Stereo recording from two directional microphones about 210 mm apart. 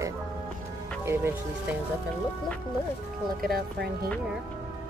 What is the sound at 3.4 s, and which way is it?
Speech, 45° right (ahead or behind).